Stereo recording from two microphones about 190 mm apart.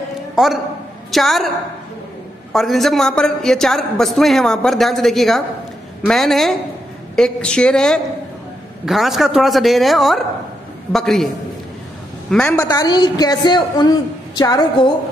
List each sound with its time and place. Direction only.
0.4 s a man's voice: 5° right (ahead or behind)
2.5 s a man's voice: centre (ahead or behind)
12.3 s a man's voice: 5° left (ahead or behind)
12.5 s a woman's voice: 20° left (ahead or behind)